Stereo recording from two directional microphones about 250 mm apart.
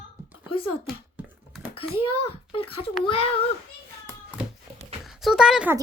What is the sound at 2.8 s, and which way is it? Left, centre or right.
Speech, left.